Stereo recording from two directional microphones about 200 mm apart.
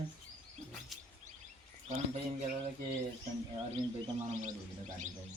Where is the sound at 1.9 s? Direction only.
35° right (ahead or behind).